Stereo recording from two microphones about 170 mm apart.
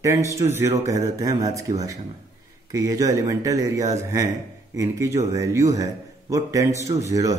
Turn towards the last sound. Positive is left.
turn(degrees=-20)  # may be behind; listen again after turning